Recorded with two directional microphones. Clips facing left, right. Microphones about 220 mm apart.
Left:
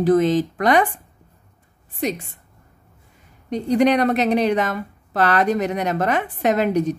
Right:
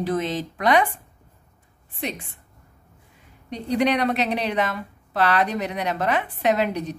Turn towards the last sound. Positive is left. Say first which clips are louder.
# left 4 dB
turn(degrees=45)  # may be behind; listen again after turning